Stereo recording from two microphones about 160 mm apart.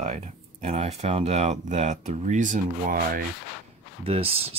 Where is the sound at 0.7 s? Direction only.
45° right (ahead or behind); by 3.2 s 65° right (ahead or behind).